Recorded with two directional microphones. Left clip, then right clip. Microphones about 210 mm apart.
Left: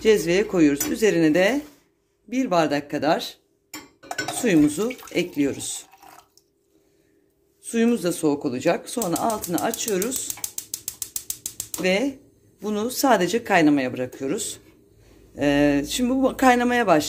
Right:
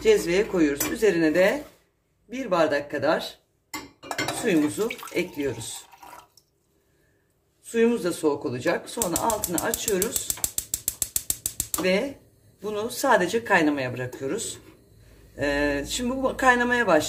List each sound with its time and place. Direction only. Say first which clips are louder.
0.0 s speech: left 2 dB; 40° left (ahead or behind)
4.5 s speech: left 5 dB; 45° left (ahead or behind)
7.7 s speech: even; 45° left (ahead or behind)
11.8 s speech: left 2 dB; 45° left (ahead or behind)